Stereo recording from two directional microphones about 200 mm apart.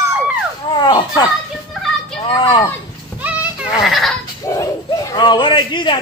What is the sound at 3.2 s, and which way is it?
Children playing, 5° right (ahead or behind).